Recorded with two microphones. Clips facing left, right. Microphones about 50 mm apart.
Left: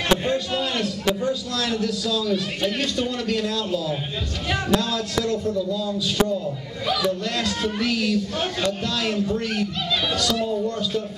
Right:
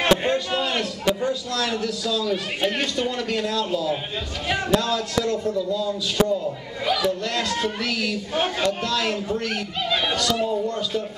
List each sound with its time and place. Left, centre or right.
0.3 s a man's voice: centre